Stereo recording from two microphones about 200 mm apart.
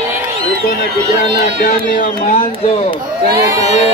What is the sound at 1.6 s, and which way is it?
Speech, 40° left (ahead or behind).